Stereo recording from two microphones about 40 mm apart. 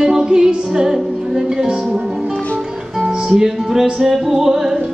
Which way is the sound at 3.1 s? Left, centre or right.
Centre.